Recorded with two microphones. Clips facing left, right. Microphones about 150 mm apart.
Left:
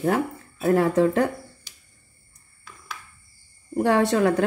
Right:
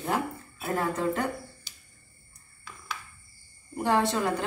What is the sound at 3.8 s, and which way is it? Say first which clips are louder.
Speech: left 6 dB; 65° left (ahead or behind).